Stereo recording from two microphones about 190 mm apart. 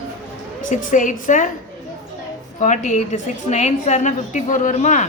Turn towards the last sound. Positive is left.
turn(degrees=40)  # may be behind; listen again after turning